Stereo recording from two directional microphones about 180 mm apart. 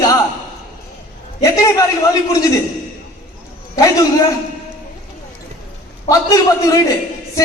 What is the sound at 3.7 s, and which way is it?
Speech, 20° left (ahead or behind).